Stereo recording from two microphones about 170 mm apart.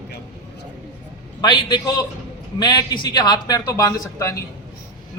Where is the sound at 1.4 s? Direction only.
25° left (ahead or behind).